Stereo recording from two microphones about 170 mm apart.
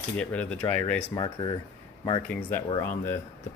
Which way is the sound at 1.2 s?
25° left (ahead or behind).